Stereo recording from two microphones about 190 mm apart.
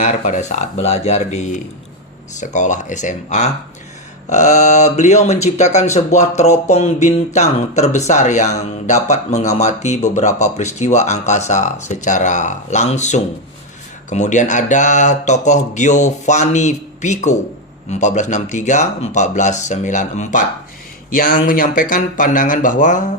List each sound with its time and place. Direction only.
0.0 s speech: 40° left (ahead or behind)